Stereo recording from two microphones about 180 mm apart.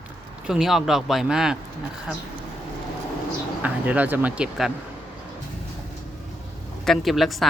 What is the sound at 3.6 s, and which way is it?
Speech, 10° right (ahead or behind).